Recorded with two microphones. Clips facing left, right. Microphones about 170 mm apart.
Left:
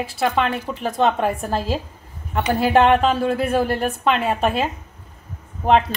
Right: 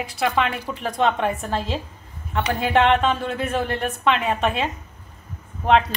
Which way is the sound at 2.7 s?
40° left (ahead or behind).